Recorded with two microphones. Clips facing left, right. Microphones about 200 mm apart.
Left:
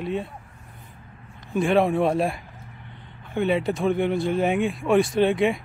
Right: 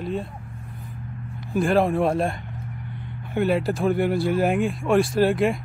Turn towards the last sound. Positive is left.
turn(degrees=0)  # may be behind; listen again after turning